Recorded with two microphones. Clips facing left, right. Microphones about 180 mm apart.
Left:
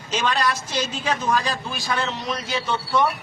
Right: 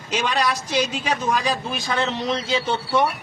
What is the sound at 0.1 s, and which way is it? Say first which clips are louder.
A man's voice: even; 15° right (ahead or behind).